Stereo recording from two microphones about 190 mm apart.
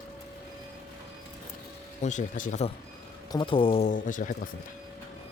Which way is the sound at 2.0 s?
40° left (ahead or behind).